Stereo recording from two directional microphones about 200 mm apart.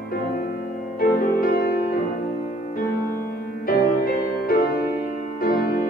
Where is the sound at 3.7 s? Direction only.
50° left (ahead or behind).